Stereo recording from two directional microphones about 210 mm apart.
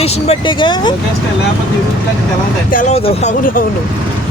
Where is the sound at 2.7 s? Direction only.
35° left (ahead or behind).